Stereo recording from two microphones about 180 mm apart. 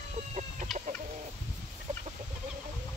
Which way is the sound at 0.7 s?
Centre (ahead or behind).